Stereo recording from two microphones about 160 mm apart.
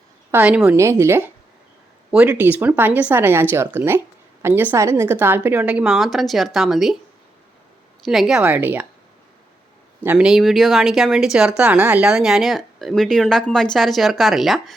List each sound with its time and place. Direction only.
0.3 s a woman's voice: 10° right (ahead or behind)
8.0 s a woman's voice: centre (ahead or behind)
10.0 s speech: 10° right (ahead or behind)